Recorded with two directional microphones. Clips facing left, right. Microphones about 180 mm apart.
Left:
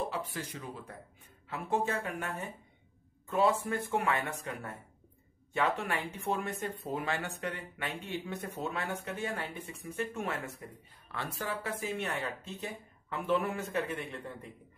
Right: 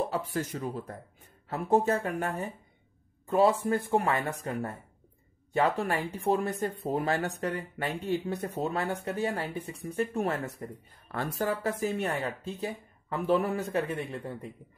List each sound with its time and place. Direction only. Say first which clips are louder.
0.1 s speech: right 7 dB; 40° right (ahead or behind)